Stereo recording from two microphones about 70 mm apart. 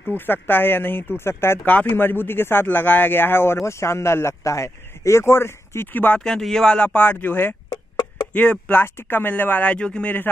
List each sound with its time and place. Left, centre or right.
0.0 s speech: left
1.6 s speech: left
6.1 s speech: centre